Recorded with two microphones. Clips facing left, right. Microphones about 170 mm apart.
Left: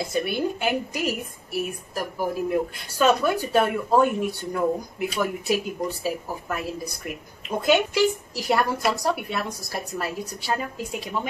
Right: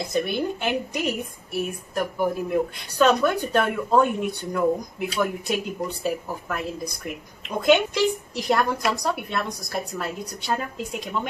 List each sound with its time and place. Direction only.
0.1 s a woman's voice: 5° left (ahead or behind)